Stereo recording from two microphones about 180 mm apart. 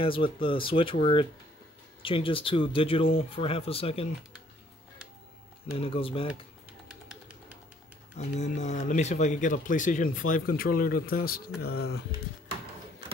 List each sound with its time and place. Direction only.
0.0 s speech: 30° left (ahead or behind)
5.8 s speech: 30° left (ahead or behind)
6.9 s bird: 5° right (ahead or behind)
8.2 s speech: 40° left (ahead or behind); by 12.0 s 60° left (ahead or behind)